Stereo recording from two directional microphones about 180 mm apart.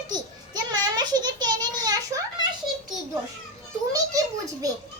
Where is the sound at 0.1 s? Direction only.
20° right (ahead or behind).